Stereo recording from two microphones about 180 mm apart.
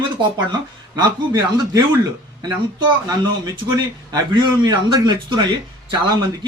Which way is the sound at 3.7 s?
25° right (ahead or behind).